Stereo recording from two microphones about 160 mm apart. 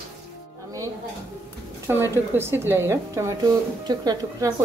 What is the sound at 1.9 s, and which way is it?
A woman's voice, 15° right (ahead or behind).